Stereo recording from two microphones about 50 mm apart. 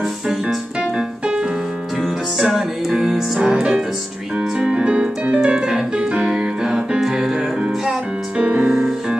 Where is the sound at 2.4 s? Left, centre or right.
Centre.